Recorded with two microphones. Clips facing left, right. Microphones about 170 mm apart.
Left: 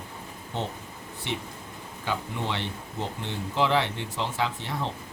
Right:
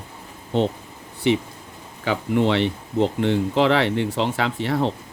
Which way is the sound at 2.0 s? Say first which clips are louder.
Right 11 dB; 90° right.